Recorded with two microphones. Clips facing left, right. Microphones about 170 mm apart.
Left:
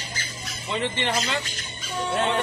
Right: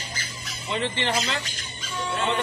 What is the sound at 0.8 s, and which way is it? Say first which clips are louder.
Speech: even; 15° left (ahead or behind).